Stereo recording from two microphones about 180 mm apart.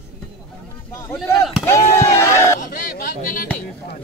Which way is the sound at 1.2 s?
Centre (ahead or behind).